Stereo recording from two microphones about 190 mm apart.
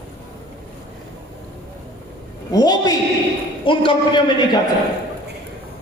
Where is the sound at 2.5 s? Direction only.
20° left (ahead or behind).